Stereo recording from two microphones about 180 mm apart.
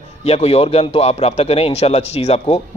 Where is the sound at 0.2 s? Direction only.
35° left (ahead or behind).